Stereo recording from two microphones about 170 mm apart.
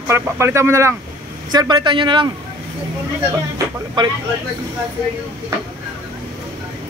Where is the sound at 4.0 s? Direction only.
30° right (ahead or behind).